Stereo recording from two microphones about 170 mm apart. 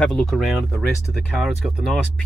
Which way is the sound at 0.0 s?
5° left (ahead or behind).